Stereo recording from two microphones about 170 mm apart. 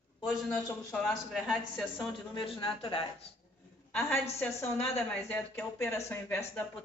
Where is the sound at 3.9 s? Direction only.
15° left (ahead or behind).